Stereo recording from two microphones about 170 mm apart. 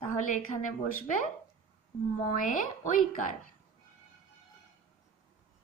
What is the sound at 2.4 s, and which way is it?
Speech, 50° left (ahead or behind).